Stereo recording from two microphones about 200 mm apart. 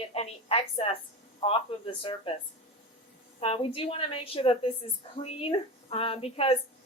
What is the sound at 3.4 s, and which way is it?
A woman's voice, 25° left (ahead or behind).